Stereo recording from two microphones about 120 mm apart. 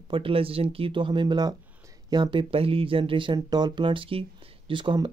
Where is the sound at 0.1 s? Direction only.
50° right (ahead or behind).